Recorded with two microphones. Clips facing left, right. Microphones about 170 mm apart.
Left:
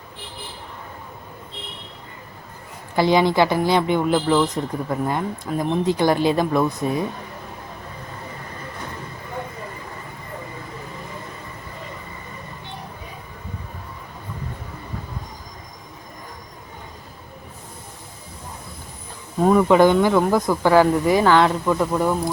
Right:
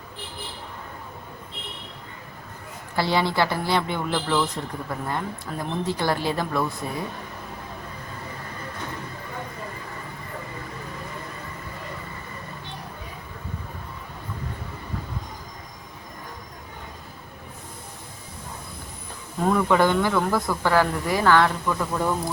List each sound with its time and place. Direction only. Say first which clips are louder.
2.9 s speech: left 6 dB; 15° left (ahead or behind)
19.5 s speech: left 6 dB; 20° left (ahead or behind)